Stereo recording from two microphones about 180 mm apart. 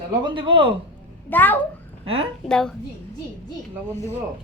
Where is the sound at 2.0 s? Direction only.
30° right (ahead or behind).